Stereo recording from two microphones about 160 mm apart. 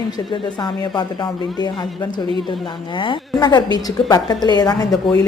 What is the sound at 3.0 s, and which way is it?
Speech, 30° left (ahead or behind).